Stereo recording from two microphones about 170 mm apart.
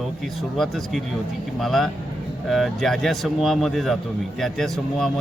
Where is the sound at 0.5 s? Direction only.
Centre (ahead or behind).